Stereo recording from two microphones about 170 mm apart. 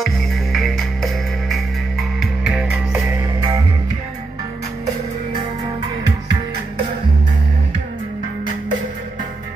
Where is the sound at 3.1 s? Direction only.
15° right (ahead or behind).